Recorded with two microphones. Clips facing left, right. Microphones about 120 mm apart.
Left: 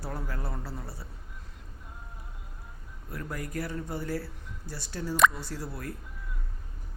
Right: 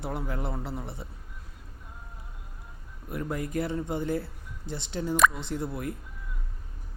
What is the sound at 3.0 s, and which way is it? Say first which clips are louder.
A man's voice: right 5 dB; 20° right (ahead or behind).